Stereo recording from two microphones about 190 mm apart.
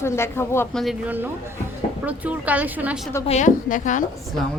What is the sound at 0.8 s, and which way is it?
Speech, 10° right (ahead or behind).